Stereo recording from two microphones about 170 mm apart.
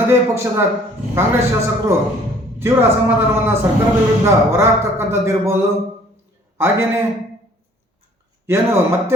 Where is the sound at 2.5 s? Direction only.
15° right (ahead or behind).